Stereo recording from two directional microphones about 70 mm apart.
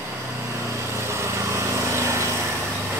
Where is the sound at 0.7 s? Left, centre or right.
Right.